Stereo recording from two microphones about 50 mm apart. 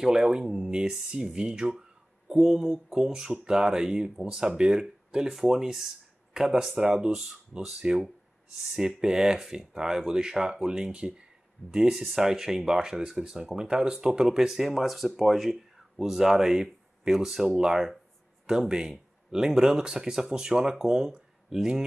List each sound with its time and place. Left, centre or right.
0.0 s speech: centre